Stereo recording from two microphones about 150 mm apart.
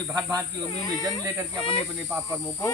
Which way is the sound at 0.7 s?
25° left (ahead or behind).